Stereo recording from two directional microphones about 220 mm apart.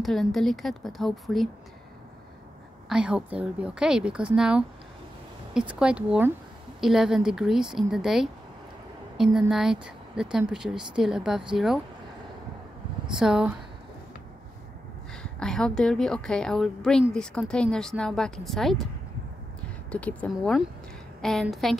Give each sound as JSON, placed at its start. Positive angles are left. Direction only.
{"t": 0.0, "sound": "a woman's voice", "side_deg": 0}
{"t": 2.9, "sound": "a woman's voice", "side_deg": -5}
{"t": 13.1, "sound": "a woman's voice", "side_deg": -5}
{"t": 15.3, "sound": "a woman's voice", "side_deg": 5}
{"t": 19.9, "sound": "a woman's voice", "side_deg": 5}